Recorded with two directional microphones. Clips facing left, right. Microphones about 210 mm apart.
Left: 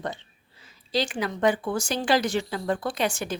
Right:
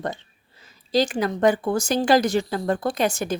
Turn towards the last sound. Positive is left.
turn(degrees=-40)  # may be behind; listen again after turning